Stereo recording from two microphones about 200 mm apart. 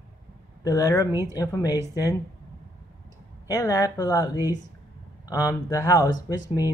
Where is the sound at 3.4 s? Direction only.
15° left (ahead or behind).